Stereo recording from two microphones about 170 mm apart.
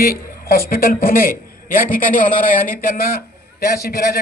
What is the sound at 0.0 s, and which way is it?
A woman's voice, 60° left (ahead or behind).